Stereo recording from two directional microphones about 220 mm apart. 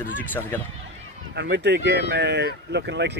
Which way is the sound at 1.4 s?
50° right (ahead or behind).